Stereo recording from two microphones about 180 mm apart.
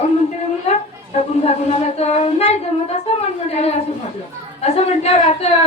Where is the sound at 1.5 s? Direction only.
35° left (ahead or behind).